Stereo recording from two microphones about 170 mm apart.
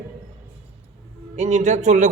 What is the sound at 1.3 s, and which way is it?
Speech, 40° right (ahead or behind).